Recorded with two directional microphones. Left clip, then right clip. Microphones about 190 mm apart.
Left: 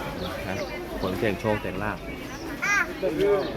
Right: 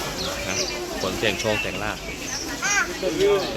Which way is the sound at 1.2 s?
35° left (ahead or behind).